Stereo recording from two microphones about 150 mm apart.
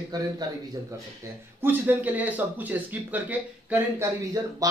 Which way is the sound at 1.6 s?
15° right (ahead or behind).